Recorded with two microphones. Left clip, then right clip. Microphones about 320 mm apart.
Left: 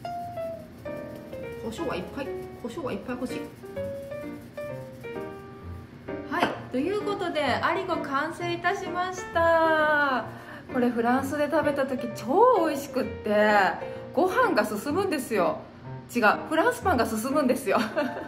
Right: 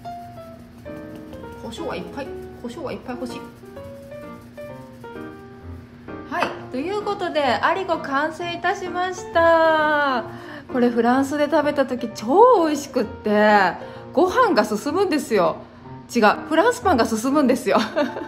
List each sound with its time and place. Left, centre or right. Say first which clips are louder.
1.7 s speech: right 3 dB; centre
6.3 s a woman's voice: right 3 dB; centre; by 18.2 s right